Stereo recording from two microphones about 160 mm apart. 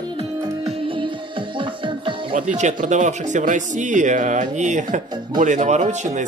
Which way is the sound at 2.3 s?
45° right (ahead or behind).